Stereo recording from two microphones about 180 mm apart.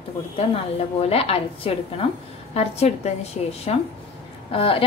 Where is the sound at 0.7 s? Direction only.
35° left (ahead or behind).